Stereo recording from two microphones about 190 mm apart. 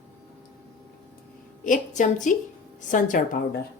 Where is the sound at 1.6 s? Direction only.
45° left (ahead or behind).